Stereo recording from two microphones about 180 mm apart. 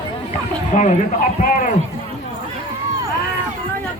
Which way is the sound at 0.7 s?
45° left (ahead or behind).